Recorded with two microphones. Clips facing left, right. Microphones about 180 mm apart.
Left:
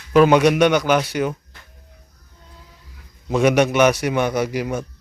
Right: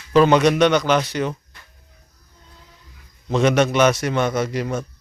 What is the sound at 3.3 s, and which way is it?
A man's voice, 10° left (ahead or behind).